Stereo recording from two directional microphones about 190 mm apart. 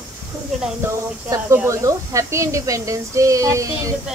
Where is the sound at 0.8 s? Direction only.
15° right (ahead or behind).